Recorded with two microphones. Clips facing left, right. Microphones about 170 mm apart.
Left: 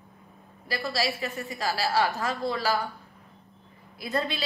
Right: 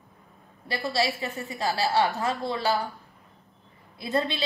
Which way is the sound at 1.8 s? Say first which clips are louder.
Right 2 dB; 20° right (ahead or behind).